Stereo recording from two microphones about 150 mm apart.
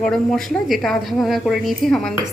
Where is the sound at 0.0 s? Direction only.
5° left (ahead or behind).